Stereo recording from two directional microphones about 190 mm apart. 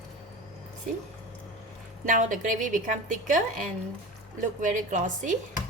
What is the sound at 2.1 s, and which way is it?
A woman's voice, 45° right (ahead or behind).